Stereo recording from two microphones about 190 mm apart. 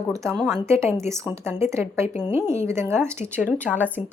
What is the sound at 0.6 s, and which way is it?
A woman's voice, 15° right (ahead or behind).